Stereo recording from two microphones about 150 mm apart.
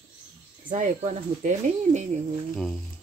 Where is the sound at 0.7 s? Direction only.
55° right (ahead or behind).